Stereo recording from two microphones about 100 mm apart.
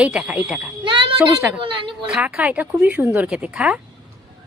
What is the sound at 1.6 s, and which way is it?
Speech, 55° right (ahead or behind).